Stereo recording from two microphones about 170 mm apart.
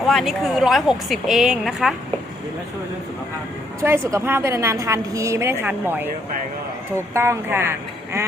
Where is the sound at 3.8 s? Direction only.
15° right (ahead or behind).